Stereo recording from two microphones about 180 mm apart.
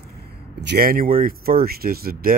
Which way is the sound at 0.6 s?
60° right (ahead or behind).